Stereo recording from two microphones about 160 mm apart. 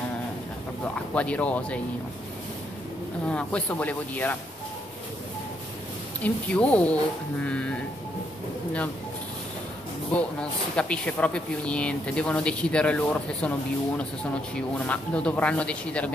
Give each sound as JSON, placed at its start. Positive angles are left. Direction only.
{"t": 1.1, "sound": "speech", "side_deg": 10}
{"t": 3.3, "sound": "speech", "side_deg": 5}
{"t": 6.2, "sound": "speech", "side_deg": 10}
{"t": 10.8, "sound": "speech", "side_deg": 5}